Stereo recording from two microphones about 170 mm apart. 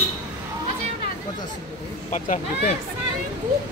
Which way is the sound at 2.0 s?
45° left (ahead or behind).